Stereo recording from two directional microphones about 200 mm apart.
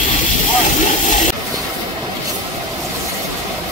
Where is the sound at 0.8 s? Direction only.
40° left (ahead or behind).